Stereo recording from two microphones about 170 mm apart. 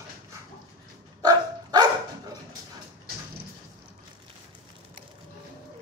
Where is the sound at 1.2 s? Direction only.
25° right (ahead or behind).